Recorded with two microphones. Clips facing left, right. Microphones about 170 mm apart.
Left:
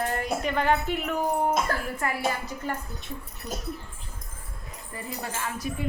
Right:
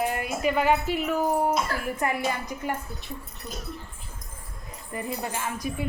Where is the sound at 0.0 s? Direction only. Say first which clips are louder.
Right 1 dB; 10° right (ahead or behind).